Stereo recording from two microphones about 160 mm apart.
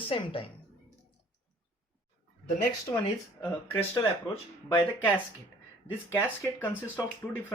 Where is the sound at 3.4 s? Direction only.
15° left (ahead or behind).